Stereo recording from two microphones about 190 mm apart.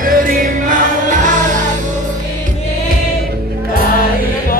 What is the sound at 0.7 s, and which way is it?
Music, 40° right (ahead or behind).